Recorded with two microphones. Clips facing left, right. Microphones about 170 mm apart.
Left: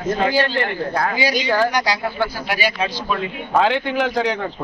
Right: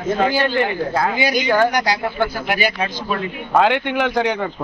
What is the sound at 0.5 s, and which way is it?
Speech, 10° right (ahead or behind).